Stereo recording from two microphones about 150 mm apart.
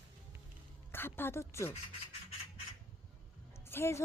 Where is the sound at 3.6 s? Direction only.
15° left (ahead or behind).